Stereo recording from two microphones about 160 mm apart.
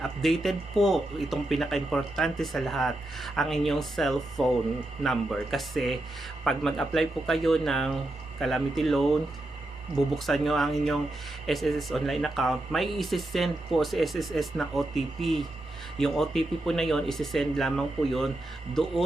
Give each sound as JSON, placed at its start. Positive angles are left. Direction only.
{"t": 0.0, "sound": "speech", "side_deg": 0}
{"t": 10.2, "sound": "speech", "side_deg": 0}